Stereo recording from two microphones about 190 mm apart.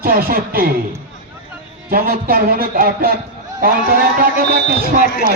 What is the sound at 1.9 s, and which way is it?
A man's voice, 50° right (ahead or behind).